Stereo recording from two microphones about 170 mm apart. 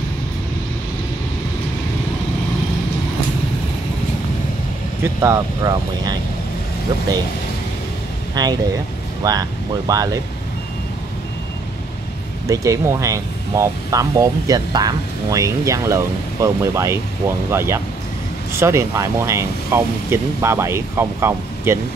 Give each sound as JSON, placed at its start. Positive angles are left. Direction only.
{"t": 5.0, "sound": "speech", "side_deg": -15}
{"t": 8.4, "sound": "speech", "side_deg": -25}
{"t": 12.4, "sound": "speech", "side_deg": -20}